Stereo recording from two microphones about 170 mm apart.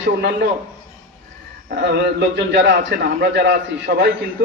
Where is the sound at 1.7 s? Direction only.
75° right (ahead or behind); by 2.7 s 90° right.